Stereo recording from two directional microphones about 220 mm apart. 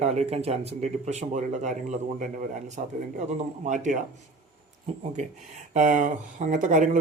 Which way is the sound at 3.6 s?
35° right (ahead or behind).